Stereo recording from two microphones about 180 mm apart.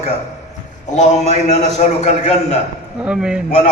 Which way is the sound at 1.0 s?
40° left (ahead or behind).